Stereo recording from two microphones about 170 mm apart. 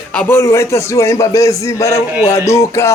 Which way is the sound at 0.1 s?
10° left (ahead or behind).